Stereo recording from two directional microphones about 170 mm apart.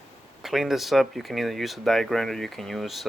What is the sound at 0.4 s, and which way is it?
Speech, centre (ahead or behind).